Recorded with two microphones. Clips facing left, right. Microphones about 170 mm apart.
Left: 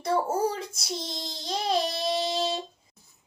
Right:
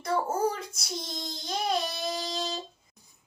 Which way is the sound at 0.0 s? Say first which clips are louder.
Left 2 dB; 30° left (ahead or behind).